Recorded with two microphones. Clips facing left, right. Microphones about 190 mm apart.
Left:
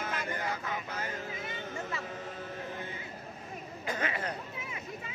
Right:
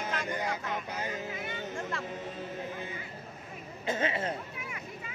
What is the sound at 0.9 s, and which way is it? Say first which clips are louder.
Speech: right 2 dB; 15° right (ahead or behind).